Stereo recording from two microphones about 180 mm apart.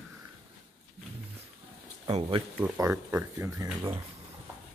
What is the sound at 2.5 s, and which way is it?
Speech, 10° right (ahead or behind).